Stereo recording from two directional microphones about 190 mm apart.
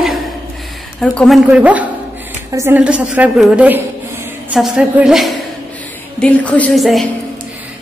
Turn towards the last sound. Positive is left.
turn(degrees=0)  # may be behind; listen again after turning